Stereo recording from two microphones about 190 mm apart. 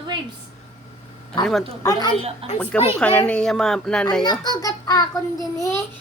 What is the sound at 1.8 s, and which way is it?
Child singing, 20° left (ahead or behind).